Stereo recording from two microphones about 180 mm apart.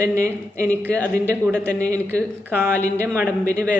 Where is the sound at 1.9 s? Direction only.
15° right (ahead or behind).